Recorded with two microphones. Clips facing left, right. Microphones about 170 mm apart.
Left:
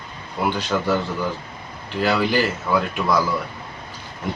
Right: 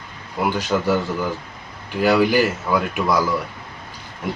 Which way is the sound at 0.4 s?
10° right (ahead or behind).